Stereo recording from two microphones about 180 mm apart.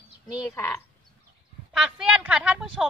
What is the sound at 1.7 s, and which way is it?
Speech, 5° right (ahead or behind).